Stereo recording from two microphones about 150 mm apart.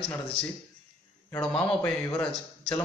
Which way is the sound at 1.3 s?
5° left (ahead or behind).